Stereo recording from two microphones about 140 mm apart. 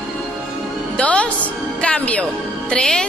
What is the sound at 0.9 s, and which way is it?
Speech, 10° left (ahead or behind).